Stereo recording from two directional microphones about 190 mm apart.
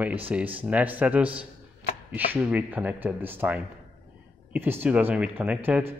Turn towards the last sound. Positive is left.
turn(degrees=-10)  # may be behind; listen again after turning